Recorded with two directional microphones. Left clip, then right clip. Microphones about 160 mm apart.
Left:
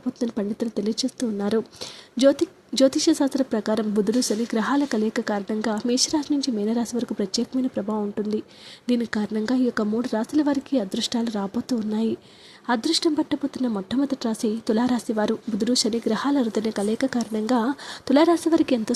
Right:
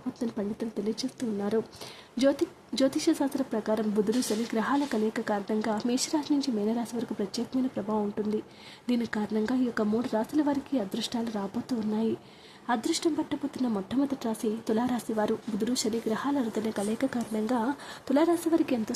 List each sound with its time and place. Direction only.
0.2 s speech: 30° left (ahead or behind)
18.6 s speech: 25° left (ahead or behind)